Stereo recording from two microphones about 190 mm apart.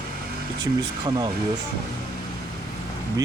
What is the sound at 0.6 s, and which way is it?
Speech, 20° right (ahead or behind).